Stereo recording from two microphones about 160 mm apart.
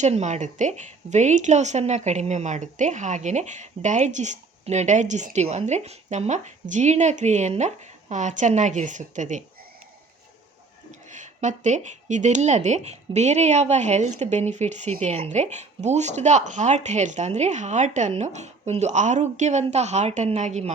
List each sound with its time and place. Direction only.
0.0 s speech: 45° right (ahead or behind)
11.1 s speech: 50° right (ahead or behind)